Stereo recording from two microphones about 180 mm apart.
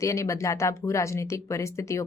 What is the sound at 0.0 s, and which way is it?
A woman's voice, 15° left (ahead or behind).